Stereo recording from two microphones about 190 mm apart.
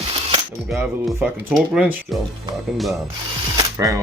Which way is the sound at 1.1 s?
Centre (ahead or behind).